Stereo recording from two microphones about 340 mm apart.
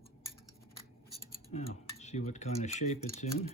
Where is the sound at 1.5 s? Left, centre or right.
Centre.